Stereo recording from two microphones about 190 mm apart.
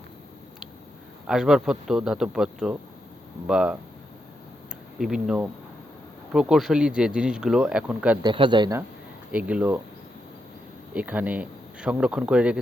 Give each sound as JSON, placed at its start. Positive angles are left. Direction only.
{"t": 1.3, "sound": "speech", "side_deg": 0}
{"t": 4.9, "sound": "speech", "side_deg": 0}
{"t": 8.2, "sound": "speech", "side_deg": -25}
{"t": 9.3, "sound": "speech", "side_deg": -5}
{"t": 10.9, "sound": "speech", "side_deg": -10}